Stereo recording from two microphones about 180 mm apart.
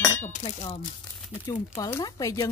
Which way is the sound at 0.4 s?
35° left (ahead or behind).